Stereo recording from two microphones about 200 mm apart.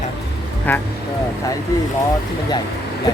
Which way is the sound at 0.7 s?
10° left (ahead or behind).